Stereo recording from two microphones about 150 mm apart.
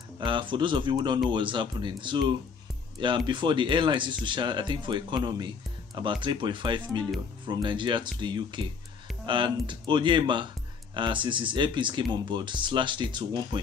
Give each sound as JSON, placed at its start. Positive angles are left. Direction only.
{"t": 0.2, "sound": "speech", "side_deg": -35}